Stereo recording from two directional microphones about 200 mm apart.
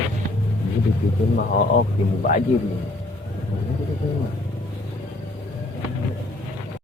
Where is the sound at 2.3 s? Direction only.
40° left (ahead or behind).